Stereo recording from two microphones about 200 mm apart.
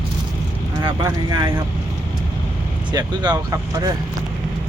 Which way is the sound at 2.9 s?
20° right (ahead or behind).